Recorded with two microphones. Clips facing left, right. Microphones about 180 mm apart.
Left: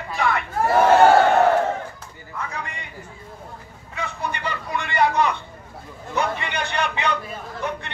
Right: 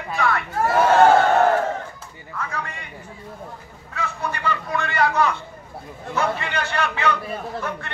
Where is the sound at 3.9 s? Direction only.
20° left (ahead or behind).